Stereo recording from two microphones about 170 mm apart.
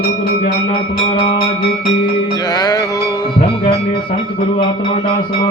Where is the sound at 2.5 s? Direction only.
20° left (ahead or behind).